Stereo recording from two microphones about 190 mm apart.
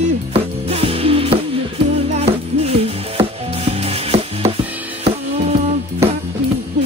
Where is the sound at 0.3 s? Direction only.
30° right (ahead or behind).